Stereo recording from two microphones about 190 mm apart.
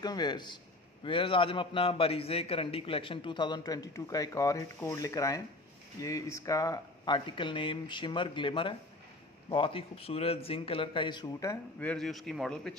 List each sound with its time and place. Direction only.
0.0 s a man's voice: 20° left (ahead or behind)
11.8 s a man's voice: 5° left (ahead or behind)